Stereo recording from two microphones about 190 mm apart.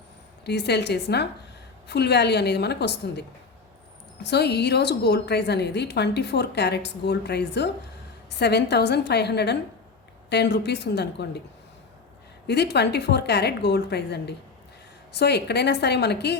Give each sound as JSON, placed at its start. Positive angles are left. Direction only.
{"t": 0.4, "sound": "a woman's voice", "side_deg": 60}
{"t": 12.5, "sound": "a woman's voice", "side_deg": 60}